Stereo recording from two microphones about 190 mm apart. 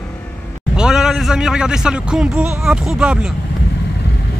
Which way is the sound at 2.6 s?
5° right (ahead or behind).